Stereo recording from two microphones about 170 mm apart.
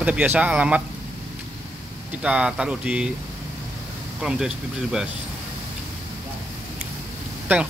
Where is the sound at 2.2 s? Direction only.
5° right (ahead or behind).